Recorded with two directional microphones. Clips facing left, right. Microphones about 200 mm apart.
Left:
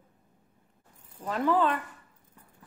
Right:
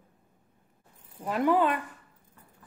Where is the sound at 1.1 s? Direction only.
10° right (ahead or behind).